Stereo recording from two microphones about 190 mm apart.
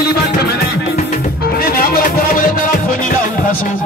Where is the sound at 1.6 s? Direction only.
50° left (ahead or behind).